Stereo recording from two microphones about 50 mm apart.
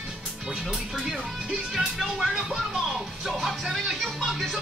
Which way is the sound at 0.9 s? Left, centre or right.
Centre.